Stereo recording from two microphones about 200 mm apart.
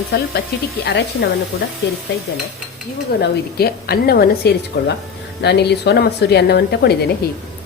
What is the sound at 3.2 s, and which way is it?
A woman's voice, 50° left (ahead or behind).